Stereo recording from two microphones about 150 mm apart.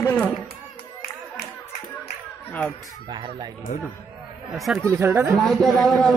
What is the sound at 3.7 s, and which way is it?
Speech, 60° left (ahead or behind).